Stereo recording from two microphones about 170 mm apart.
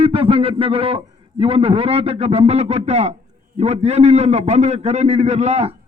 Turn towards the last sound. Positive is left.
turn(degrees=-40)  # may be behind; listen again after turning